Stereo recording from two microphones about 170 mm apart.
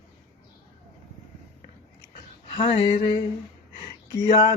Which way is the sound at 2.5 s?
25° left (ahead or behind).